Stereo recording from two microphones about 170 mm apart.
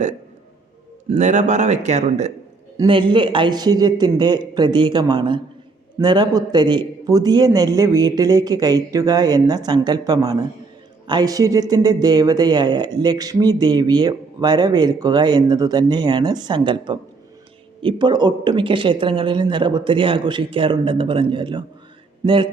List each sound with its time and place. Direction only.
1.1 s speech: 45° right (ahead or behind)
2.8 s speech: 30° right (ahead or behind)